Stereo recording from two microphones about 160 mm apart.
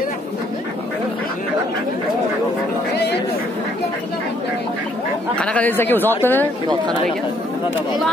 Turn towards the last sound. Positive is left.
turn(degrees=-25)  # may be behind; listen again after turning